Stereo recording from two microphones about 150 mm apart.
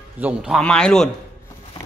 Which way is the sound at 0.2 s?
5° right (ahead or behind).